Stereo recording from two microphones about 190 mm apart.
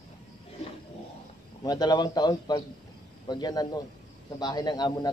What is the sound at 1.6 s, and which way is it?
Speech, 20° left (ahead or behind).